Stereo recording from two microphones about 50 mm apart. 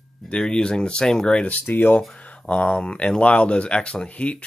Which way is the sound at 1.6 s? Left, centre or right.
Left.